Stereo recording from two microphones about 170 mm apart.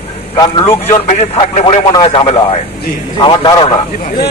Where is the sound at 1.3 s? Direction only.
35° left (ahead or behind).